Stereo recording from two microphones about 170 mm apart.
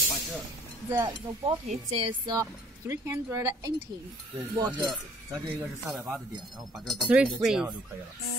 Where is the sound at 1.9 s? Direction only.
35° right (ahead or behind).